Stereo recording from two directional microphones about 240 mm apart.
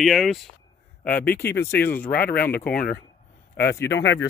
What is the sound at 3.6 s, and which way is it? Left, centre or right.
Speech, left.